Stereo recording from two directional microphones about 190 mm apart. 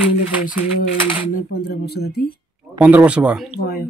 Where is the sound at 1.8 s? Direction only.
55° left (ahead or behind).